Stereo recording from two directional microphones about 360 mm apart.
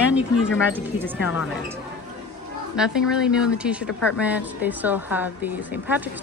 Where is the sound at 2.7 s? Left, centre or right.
Centre.